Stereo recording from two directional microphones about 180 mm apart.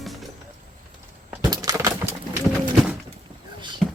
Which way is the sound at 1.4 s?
20° right (ahead or behind).